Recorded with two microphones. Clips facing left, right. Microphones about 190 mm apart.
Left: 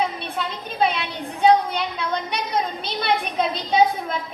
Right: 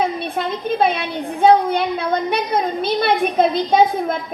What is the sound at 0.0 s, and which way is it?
A woman's voice, 50° right (ahead or behind).